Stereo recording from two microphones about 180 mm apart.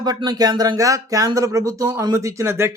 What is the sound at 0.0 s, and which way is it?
Speech, 20° right (ahead or behind).